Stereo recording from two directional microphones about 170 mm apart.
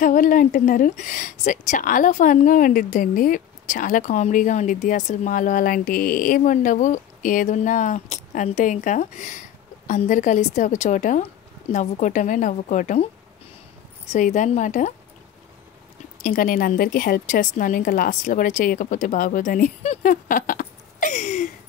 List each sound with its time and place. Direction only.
0.0 s speech: 50° left (ahead or behind)
14.1 s speech: 45° left (ahead or behind)
16.2 s speech: 50° left (ahead or behind)